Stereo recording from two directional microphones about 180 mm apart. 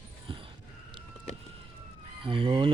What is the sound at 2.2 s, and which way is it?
Speech, 30° right (ahead or behind).